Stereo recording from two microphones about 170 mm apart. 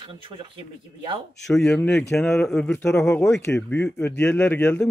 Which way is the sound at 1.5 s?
5° left (ahead or behind).